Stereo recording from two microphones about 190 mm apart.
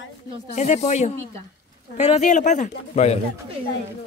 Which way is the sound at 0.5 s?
35° left (ahead or behind).